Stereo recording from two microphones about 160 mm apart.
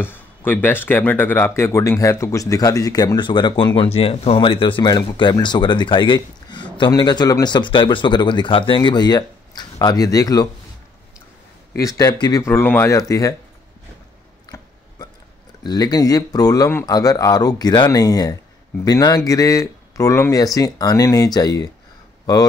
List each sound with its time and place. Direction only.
0.0 s speech: 15° left (ahead or behind)
11.7 s speech: 20° left (ahead or behind)
15.6 s speech: 25° left (ahead or behind)